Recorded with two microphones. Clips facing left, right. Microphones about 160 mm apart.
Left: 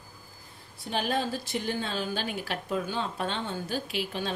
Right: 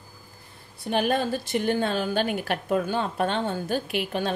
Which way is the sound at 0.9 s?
55° right (ahead or behind).